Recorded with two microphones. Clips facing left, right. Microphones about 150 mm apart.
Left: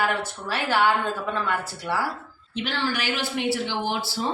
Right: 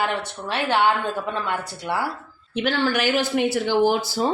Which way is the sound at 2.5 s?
50° right (ahead or behind).